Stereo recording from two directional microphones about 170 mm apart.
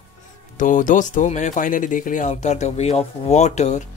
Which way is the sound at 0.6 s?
50° left (ahead or behind).